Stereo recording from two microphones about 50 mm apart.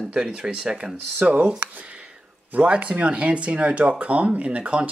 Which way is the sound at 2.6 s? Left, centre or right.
Right.